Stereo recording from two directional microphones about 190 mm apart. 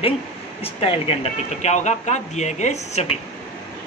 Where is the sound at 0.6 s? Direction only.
30° left (ahead or behind).